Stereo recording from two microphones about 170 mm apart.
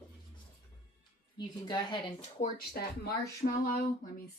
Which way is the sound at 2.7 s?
60° left (ahead or behind).